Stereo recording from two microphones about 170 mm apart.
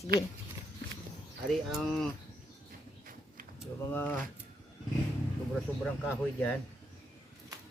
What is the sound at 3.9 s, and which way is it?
Speech, 10° left (ahead or behind).